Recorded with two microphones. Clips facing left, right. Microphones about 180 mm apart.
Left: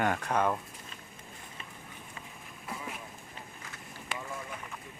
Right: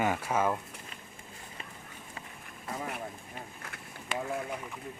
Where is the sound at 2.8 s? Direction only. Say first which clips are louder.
Right 7 dB; 60° right (ahead or behind).